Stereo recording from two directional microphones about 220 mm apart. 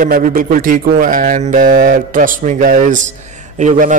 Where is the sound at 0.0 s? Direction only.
40° right (ahead or behind).